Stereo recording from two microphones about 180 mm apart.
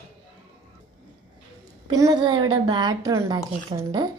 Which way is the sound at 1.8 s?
20° right (ahead or behind).